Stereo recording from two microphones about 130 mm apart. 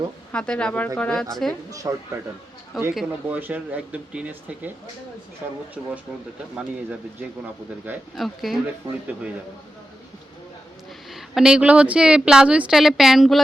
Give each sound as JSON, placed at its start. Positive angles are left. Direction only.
{"t": 0.3, "sound": "speech", "side_deg": 5}
{"t": 1.8, "sound": "speech", "side_deg": -25}
{"t": 2.9, "sound": "speech", "side_deg": 0}
{"t": 8.1, "sound": "speech", "side_deg": 0}
{"t": 11.1, "sound": "speech", "side_deg": -5}